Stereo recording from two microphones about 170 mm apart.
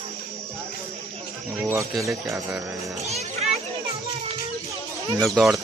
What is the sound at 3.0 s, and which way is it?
Children playing, 40° right (ahead or behind).